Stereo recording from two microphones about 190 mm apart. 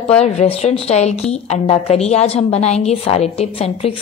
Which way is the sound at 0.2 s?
35° left (ahead or behind).